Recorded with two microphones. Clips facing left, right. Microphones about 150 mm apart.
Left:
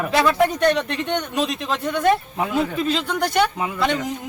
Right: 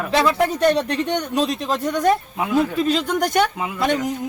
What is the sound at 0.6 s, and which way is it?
A man's voice, 35° right (ahead or behind).